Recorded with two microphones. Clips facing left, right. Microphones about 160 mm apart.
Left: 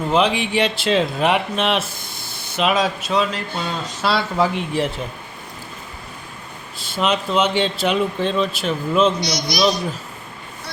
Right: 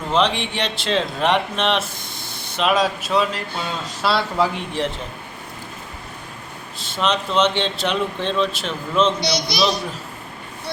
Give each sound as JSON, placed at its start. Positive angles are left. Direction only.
{"t": 0.1, "sound": "speech", "side_deg": 5}
{"t": 6.9, "sound": "speech", "side_deg": 5}
{"t": 9.2, "sound": "a child's voice", "side_deg": -30}